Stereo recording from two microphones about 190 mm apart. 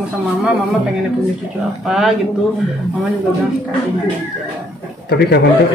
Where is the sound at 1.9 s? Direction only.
Centre (ahead or behind).